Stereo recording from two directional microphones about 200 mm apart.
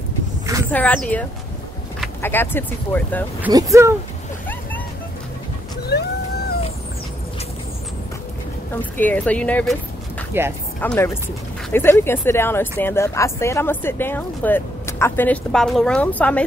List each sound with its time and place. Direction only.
0.7 s speech: 10° left (ahead or behind)
2.2 s speech: 10° left (ahead or behind)
3.4 s speech: 15° right (ahead or behind)
5.9 s whale vocalization: 55° left (ahead or behind)
8.9 s speech: 10° left (ahead or behind)
10.3 s speech: 10° right (ahead or behind)
10.8 s speech: 10° left (ahead or behind)